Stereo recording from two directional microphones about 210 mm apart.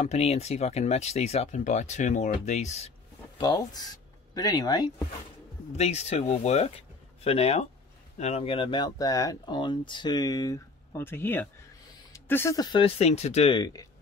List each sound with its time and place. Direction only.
0.0 s speech: 30° left (ahead or behind)
3.3 s speech: 20° left (ahead or behind)
5.8 s speech: 30° left (ahead or behind)